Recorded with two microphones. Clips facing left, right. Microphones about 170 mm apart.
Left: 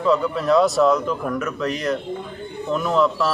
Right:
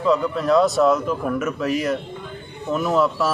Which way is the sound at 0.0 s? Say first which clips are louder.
Even; centre (ahead or behind).